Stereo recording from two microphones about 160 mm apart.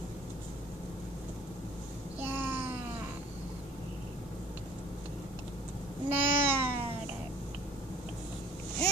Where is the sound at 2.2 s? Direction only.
15° right (ahead or behind).